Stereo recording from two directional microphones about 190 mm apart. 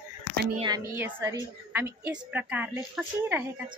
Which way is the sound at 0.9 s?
10° right (ahead or behind).